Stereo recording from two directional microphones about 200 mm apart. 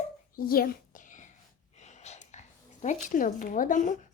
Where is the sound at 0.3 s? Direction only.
45° left (ahead or behind).